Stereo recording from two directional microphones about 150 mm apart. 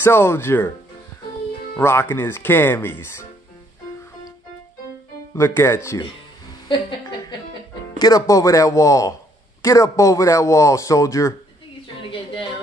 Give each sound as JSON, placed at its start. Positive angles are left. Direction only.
{"t": 0.0, "sound": "speech", "side_deg": 15}
{"t": 1.8, "sound": "speech", "side_deg": 15}
{"t": 5.3, "sound": "speech", "side_deg": 15}
{"t": 8.0, "sound": "speech", "side_deg": 25}